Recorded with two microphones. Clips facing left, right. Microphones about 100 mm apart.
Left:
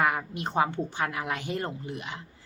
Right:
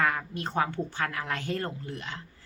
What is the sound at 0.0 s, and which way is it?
A woman's voice, 15° left (ahead or behind).